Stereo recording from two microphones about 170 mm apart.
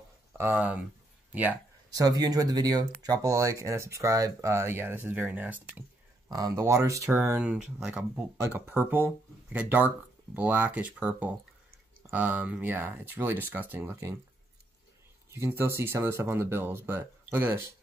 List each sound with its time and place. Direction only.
0.4 s speech: 10° right (ahead or behind)
1.9 s speech: 20° right (ahead or behind)
6.3 s speech: 20° right (ahead or behind)
15.3 s speech: 15° right (ahead or behind)